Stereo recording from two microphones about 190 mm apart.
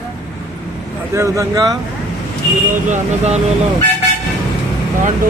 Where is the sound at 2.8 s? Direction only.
40° right (ahead or behind).